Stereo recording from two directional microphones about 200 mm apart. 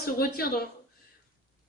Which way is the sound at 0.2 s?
45° left (ahead or behind).